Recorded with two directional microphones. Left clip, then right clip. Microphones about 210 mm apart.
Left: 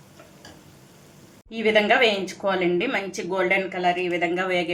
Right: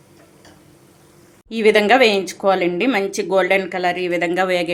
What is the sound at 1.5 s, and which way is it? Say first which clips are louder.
A woman's voice: right 6 dB; 50° right (ahead or behind).